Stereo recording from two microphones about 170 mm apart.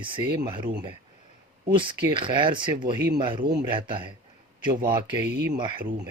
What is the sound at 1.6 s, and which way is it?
Speech, 30° right (ahead or behind).